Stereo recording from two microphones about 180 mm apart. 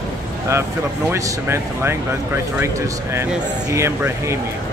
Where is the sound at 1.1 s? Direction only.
15° right (ahead or behind).